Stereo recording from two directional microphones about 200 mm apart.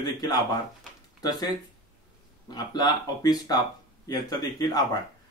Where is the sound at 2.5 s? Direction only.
20° left (ahead or behind).